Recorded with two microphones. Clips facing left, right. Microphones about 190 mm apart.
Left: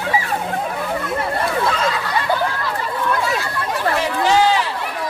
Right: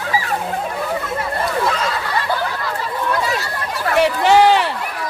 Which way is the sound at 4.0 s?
65° right (ahead or behind).